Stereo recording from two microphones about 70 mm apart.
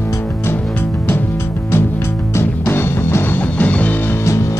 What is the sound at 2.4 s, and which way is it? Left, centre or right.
Music, left.